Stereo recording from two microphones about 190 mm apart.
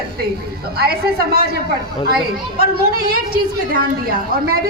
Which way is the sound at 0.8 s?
55° right (ahead or behind).